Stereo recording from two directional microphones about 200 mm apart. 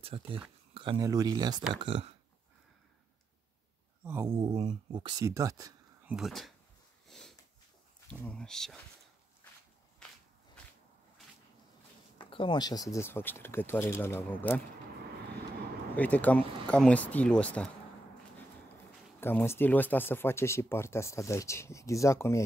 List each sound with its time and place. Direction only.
0.0 s speech: 30° right (ahead or behind)
4.0 s speech: 10° right (ahead or behind)
4.3 s speech: 20° right (ahead or behind)
6.0 s speech: centre (ahead or behind)
7.1 s sniff: centre (ahead or behind)
8.1 s speech: 5° left (ahead or behind)
12.2 s speech: 25° left (ahead or behind); by 14.6 s 10° left (ahead or behind)
15.9 s speech: 10° left (ahead or behind)
19.1 s speech: 10° left (ahead or behind)